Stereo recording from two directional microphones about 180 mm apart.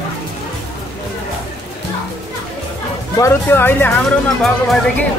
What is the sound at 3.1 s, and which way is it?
Speech, 15° left (ahead or behind).